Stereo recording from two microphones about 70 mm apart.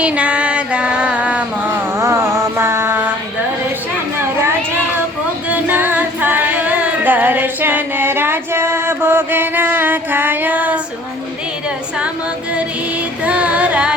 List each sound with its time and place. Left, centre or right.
0.0 s a sound: centre
2.0 s mantra: right
5.5 s music: right
13.2 s music: centre